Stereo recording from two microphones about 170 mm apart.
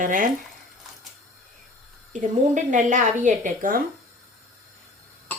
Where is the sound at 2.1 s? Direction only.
45° right (ahead or behind).